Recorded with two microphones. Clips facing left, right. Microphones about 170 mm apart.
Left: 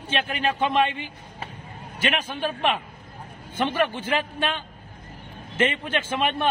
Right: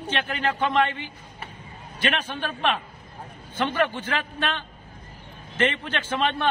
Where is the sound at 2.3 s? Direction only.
10° left (ahead or behind).